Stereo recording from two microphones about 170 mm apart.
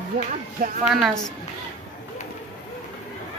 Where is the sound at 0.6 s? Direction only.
50° right (ahead or behind).